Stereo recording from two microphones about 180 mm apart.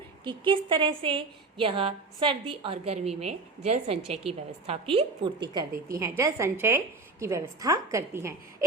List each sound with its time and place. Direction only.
0.3 s a woman's voice: 25° right (ahead or behind)